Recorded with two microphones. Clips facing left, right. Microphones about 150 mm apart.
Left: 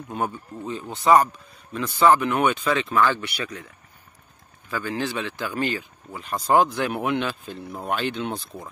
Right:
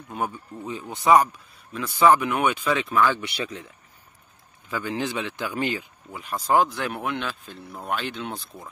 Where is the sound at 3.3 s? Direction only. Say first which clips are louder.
Right 1 dB; 25° right (ahead or behind).